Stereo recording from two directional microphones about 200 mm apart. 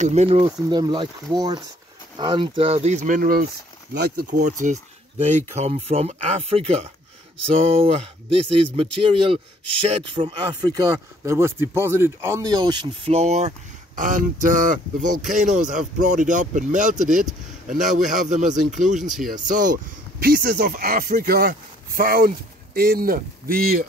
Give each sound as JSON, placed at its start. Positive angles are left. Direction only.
{"t": 0.0, "sound": "speech", "side_deg": -30}
{"t": 0.5, "sound": "a man's voice", "side_deg": -20}